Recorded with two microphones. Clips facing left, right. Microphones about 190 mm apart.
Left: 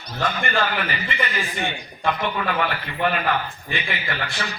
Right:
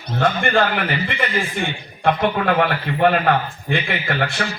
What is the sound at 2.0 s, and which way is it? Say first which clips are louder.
A man's voice: right 6 dB; 55° right (ahead or behind).